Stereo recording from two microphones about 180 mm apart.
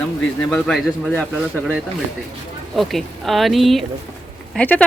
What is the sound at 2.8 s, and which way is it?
A man's voice, centre (ahead or behind).